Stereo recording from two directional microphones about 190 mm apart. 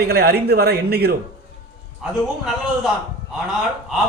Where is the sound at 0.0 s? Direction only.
55° right (ahead or behind).